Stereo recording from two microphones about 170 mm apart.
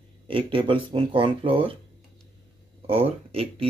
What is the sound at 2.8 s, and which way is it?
Speech, 35° right (ahead or behind).